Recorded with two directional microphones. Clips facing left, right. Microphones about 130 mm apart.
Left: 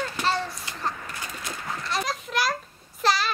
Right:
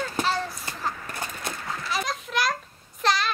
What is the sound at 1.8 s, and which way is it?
Children playing, centre (ahead or behind).